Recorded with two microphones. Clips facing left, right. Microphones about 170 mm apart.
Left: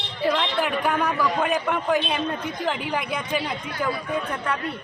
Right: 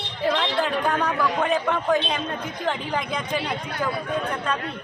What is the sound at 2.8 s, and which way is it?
Speech, 10° left (ahead or behind).